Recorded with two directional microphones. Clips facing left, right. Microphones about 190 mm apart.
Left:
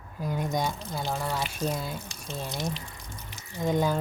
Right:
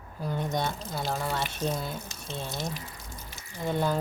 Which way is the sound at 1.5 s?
10° left (ahead or behind).